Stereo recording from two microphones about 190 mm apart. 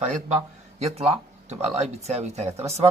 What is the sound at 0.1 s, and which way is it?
A man's voice, 35° right (ahead or behind).